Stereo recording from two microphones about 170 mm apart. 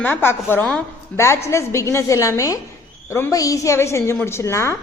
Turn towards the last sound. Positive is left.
turn(degrees=15)  # may be behind; listen again after turning